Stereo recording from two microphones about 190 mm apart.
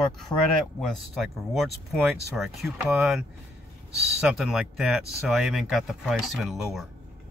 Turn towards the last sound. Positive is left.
turn(degrees=0)  # may be behind; listen again after turning